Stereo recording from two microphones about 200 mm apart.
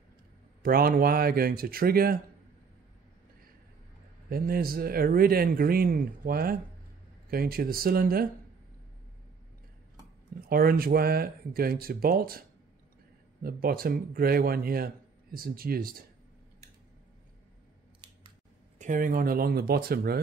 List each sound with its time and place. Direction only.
0.6 s speech: 45° right (ahead or behind)
4.3 s speech: 50° right (ahead or behind)
10.4 s speech: 45° right (ahead or behind)
18.8 s speech: 40° right (ahead or behind)